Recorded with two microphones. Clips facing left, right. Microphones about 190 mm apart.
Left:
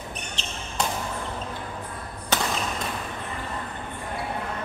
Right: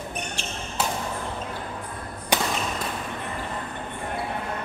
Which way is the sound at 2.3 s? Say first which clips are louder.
Right 2 dB; 15° right (ahead or behind).